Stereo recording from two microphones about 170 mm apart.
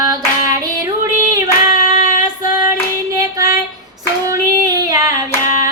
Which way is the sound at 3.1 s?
20° right (ahead or behind).